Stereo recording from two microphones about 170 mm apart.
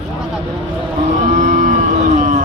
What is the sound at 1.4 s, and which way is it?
Cattle, 50° right (ahead or behind).